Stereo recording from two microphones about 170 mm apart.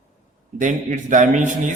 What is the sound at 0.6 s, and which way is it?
Speech, 50° right (ahead or behind).